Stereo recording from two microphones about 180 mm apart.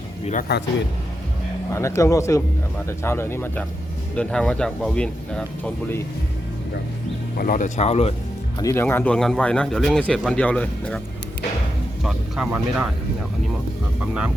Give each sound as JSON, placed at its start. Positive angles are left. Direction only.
{"t": 0.5, "sound": "speech", "side_deg": 65}
{"t": 1.7, "sound": "a man's voice", "side_deg": 15}
{"t": 7.3, "sound": "speech", "side_deg": 50}
{"t": 8.5, "sound": "a man's voice", "side_deg": 15}
{"t": 12.0, "sound": "speech", "side_deg": -10}
{"t": 14.0, "sound": "speech", "side_deg": -5}